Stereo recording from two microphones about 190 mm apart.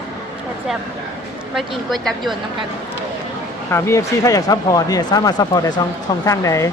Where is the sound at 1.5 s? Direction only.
Centre (ahead or behind).